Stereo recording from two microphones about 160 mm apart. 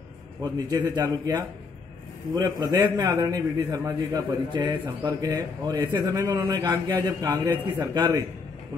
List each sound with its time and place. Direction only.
0.4 s a man's voice: 25° right (ahead or behind)
2.6 s a man's voice: 25° right (ahead or behind)